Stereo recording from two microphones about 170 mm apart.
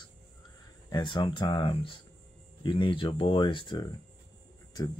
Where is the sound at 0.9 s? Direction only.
30° left (ahead or behind).